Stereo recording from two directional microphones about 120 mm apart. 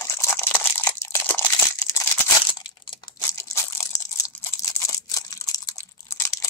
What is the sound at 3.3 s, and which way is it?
Crushing, 25° left (ahead or behind).